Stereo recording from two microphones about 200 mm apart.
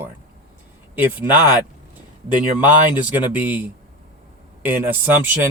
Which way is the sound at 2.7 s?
10° right (ahead or behind).